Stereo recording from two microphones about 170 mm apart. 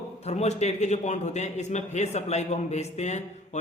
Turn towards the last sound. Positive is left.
turn(degrees=40)  # may be behind; listen again after turning